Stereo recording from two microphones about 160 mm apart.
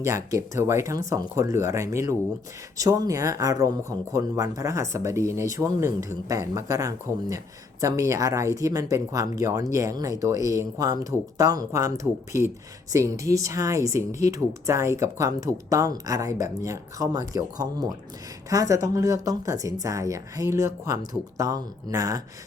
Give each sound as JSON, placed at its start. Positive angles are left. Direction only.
{"t": 0.0, "sound": "speech", "side_deg": -20}